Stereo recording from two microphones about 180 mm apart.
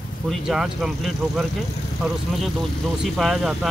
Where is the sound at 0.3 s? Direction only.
Centre (ahead or behind).